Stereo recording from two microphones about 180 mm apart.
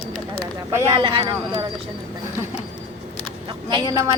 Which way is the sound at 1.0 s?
30° right (ahead or behind).